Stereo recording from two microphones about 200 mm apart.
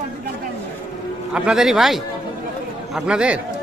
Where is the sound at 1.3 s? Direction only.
5° right (ahead or behind).